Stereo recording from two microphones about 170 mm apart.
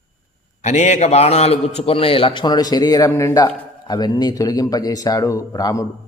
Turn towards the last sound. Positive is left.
turn(degrees=20)  # may be behind; listen again after turning